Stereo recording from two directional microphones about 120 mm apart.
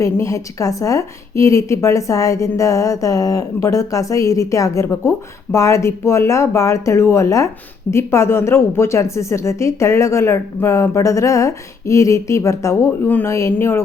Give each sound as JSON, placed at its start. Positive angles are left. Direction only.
{"t": 0.0, "sound": "a woman's voice", "side_deg": 25}